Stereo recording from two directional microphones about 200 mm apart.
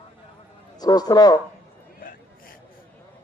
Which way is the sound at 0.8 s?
20° left (ahead or behind).